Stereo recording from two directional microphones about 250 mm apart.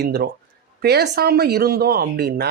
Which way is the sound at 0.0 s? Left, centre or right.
Right.